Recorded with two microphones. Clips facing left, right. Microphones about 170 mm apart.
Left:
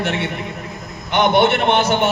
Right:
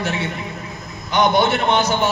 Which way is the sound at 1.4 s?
60° left (ahead or behind).